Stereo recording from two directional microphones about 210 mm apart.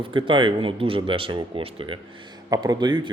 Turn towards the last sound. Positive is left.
turn(degrees=-20)  # may be behind; listen again after turning